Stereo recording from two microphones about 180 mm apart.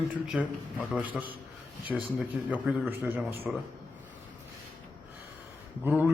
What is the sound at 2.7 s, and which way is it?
Speech, 10° right (ahead or behind).